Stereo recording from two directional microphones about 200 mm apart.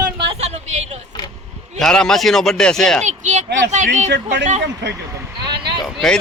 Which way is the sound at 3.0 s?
35° right (ahead or behind).